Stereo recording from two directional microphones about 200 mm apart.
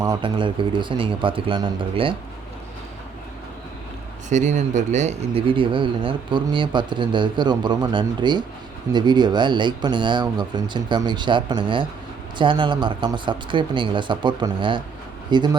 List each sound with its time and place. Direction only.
0.0 s speech: 20° right (ahead or behind)
4.3 s speech: 35° right (ahead or behind)